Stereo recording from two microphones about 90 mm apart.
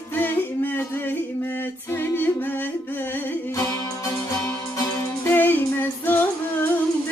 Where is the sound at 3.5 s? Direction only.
40° left (ahead or behind).